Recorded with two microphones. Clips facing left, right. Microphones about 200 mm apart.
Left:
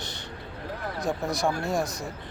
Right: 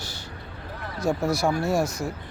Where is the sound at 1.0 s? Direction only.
15° left (ahead or behind).